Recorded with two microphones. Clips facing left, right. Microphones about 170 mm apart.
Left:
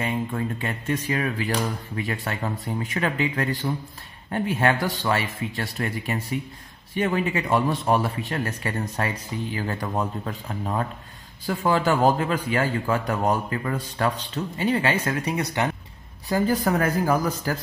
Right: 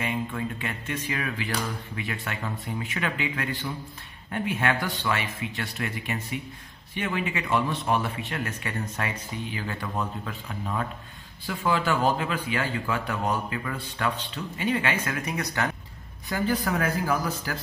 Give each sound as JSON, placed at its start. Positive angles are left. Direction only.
{"t": 0.0, "sound": "a man's voice", "side_deg": 35}
{"t": 16.3, "sound": "a man's voice", "side_deg": 40}